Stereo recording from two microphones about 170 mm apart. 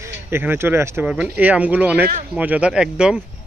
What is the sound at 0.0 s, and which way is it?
Speech, 15° right (ahead or behind).